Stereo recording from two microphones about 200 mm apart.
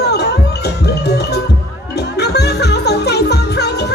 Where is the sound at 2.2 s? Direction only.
55° left (ahead or behind).